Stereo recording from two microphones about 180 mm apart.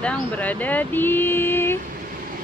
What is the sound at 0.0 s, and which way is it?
Speech, 5° left (ahead or behind).